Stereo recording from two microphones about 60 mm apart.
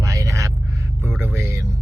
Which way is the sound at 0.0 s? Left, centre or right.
Right.